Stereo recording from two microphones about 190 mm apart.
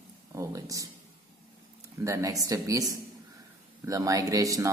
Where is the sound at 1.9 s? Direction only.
15° right (ahead or behind).